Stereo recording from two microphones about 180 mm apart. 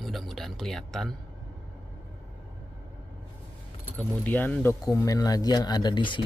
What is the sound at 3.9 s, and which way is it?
Speech, 10° left (ahead or behind).